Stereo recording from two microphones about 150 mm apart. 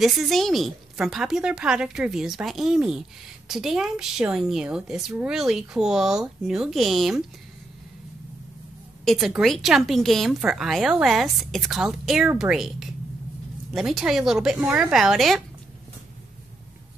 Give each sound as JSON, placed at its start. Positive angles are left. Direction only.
{"t": 0.0, "sound": "speech", "side_deg": 0}
{"t": 9.0, "sound": "speech", "side_deg": 0}